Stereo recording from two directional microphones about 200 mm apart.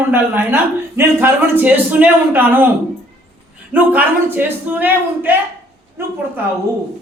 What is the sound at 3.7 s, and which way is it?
A man's voice, 10° right (ahead or behind).